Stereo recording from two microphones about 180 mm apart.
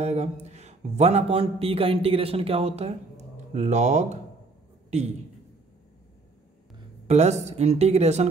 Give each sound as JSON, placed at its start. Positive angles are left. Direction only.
{"t": 0.0, "sound": "a man's voice", "side_deg": -35}
{"t": 7.1, "sound": "a man's voice", "side_deg": -40}